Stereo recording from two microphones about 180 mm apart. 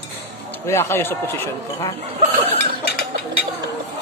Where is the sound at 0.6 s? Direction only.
15° left (ahead or behind).